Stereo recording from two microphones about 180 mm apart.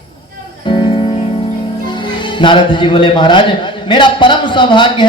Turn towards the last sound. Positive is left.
turn(degrees=25)  # may be behind; listen again after turning